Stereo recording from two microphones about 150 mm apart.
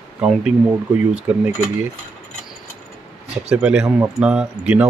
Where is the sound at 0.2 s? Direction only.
5° right (ahead or behind).